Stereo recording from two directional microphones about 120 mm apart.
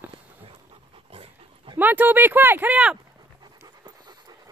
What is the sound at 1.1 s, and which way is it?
Dog, 50° right (ahead or behind).